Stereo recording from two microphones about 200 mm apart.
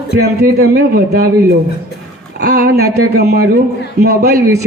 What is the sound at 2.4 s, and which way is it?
A man's voice, 55° right (ahead or behind).